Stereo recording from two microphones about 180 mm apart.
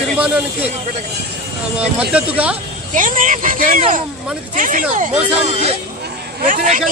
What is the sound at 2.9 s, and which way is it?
Speech, 45° right (ahead or behind).